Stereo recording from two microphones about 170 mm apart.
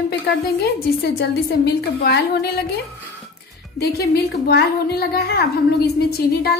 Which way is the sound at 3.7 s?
70° left (ahead or behind).